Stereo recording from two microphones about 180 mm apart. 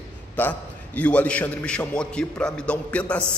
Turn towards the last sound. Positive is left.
turn(degrees=5)  # may be behind; listen again after turning